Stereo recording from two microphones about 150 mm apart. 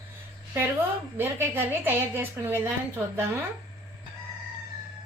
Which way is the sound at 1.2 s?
15° right (ahead or behind).